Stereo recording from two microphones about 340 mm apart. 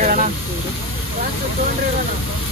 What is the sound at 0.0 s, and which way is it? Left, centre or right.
Vehicle, right.